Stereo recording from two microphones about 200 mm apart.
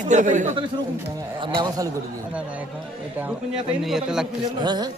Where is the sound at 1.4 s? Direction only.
20° right (ahead or behind).